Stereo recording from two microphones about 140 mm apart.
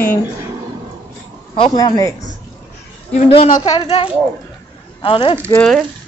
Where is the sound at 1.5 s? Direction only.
35° left (ahead or behind).